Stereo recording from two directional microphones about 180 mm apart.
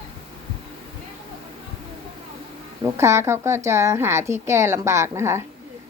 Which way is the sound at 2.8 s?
15° right (ahead or behind).